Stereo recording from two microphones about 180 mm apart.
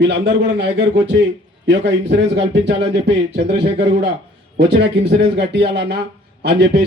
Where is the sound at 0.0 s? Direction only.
75° right (ahead or behind).